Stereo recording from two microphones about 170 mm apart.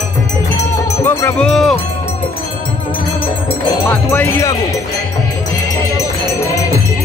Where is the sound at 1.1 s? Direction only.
15° left (ahead or behind).